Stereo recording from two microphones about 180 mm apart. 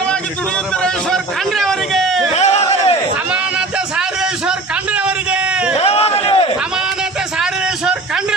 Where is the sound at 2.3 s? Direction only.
40° left (ahead or behind).